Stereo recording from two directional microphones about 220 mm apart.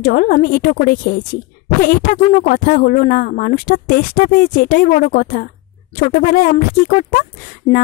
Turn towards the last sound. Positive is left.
turn(degrees=35)  # may be behind; listen again after turning